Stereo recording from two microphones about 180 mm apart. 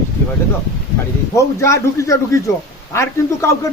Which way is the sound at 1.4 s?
15° left (ahead or behind).